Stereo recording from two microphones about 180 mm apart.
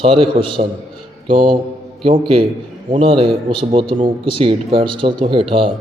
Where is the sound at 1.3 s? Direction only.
50° right (ahead or behind).